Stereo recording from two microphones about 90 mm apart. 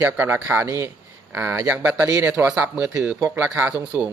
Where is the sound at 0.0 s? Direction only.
20° right (ahead or behind).